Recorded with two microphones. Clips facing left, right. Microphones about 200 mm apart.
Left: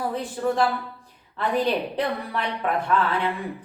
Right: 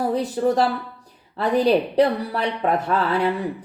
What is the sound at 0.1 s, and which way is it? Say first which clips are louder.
A woman's voice: right 5 dB; 40° right (ahead or behind).